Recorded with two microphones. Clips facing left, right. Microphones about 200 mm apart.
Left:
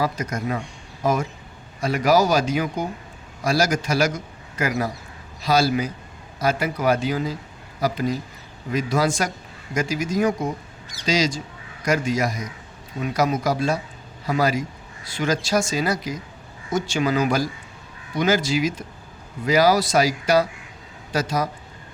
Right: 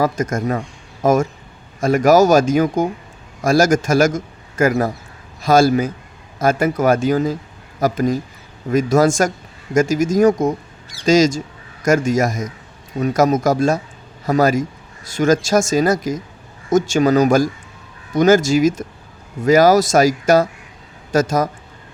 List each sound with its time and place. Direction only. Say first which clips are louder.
0.0 s a man's voice: right 6 dB; 45° right (ahead or behind)